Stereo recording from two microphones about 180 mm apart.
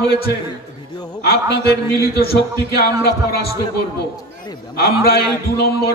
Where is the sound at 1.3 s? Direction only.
60° left (ahead or behind).